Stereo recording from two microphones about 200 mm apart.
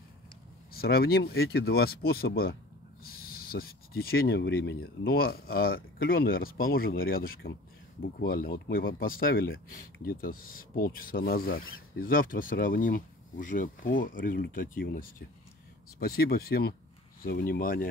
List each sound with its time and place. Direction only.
0.7 s speech: 50° left (ahead or behind)